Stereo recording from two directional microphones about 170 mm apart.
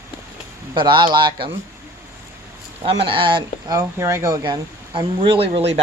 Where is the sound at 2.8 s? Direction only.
35° right (ahead or behind).